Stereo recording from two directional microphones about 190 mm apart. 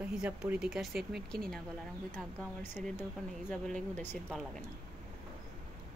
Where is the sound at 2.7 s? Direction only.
10° left (ahead or behind).